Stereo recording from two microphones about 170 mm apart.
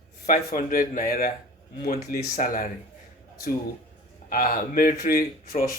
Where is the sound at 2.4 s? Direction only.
55° left (ahead or behind).